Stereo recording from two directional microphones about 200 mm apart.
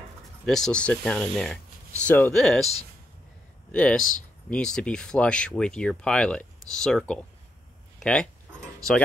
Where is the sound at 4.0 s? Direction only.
40° left (ahead or behind).